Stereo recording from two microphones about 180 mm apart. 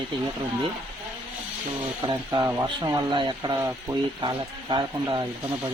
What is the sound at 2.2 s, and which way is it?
Speech, 20° right (ahead or behind).